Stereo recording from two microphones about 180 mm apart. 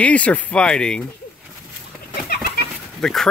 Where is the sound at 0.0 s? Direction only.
5° left (ahead or behind).